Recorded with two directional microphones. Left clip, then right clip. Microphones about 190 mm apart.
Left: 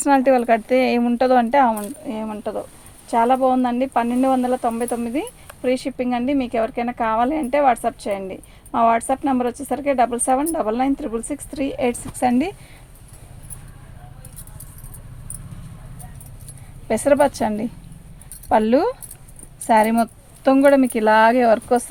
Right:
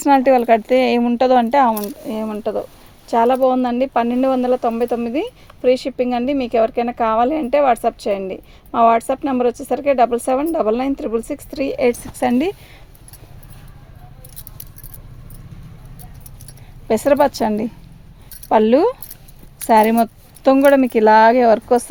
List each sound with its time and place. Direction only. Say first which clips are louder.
0.0 s a woman's voice: right 3 dB; 30° right (ahead or behind)
16.9 s a woman's voice: right 2 dB; 35° right (ahead or behind)